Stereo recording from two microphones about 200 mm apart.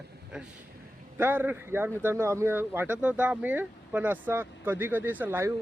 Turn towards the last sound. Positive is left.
turn(degrees=-10)  # may be behind; listen again after turning